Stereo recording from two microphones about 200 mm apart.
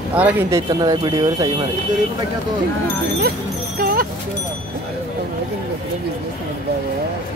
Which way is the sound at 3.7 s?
45° right (ahead or behind).